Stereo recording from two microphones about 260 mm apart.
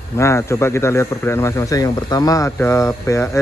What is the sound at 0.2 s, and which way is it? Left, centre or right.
Speech, centre.